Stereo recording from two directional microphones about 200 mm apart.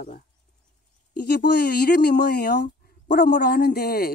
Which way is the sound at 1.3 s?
55° left (ahead or behind).